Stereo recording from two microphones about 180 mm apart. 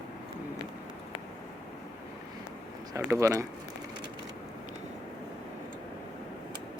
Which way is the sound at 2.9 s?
15° right (ahead or behind).